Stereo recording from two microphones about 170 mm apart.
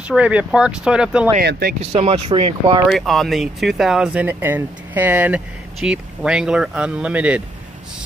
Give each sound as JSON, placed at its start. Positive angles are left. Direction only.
{"t": 0.1, "sound": "speech", "side_deg": -5}
{"t": 1.4, "sound": "speech", "side_deg": -65}
{"t": 1.8, "sound": "speech", "side_deg": -35}
{"t": 2.9, "sound": "speech", "side_deg": 0}